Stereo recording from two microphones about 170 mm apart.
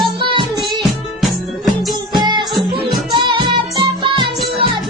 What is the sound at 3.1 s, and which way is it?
Music, 30° right (ahead or behind).